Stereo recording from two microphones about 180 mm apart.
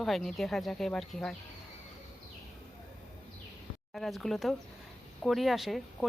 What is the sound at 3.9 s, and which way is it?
Speech, centre (ahead or behind).